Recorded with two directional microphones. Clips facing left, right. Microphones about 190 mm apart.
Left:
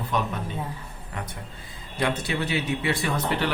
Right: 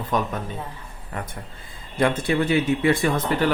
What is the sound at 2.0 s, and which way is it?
Speech, 50° right (ahead or behind).